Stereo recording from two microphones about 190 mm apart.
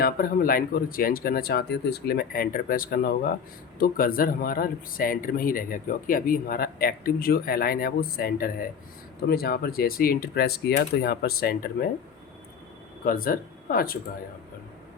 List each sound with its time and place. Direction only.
0.0 s speech: 50° left (ahead or behind)
13.1 s speech: 50° left (ahead or behind)